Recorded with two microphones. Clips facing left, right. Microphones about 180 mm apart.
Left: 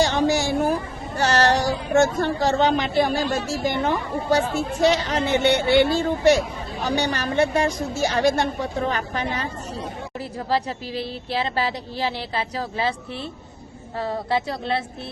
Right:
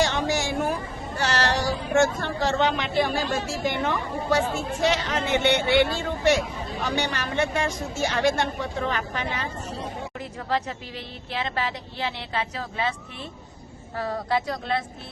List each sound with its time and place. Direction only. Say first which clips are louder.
0.0 s a sound: left 4 dB; 35° left (ahead or behind)
1.2 s a woman's voice: left 5 dB; 45° left (ahead or behind)
14.0 s speech: left 2 dB; 25° left (ahead or behind)